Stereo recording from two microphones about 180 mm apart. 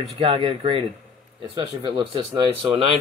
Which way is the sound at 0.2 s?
30° right (ahead or behind).